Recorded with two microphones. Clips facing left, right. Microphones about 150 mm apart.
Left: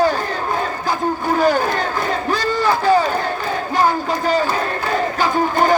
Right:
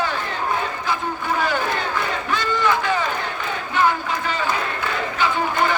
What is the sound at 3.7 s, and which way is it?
Crowd, 40° left (ahead or behind).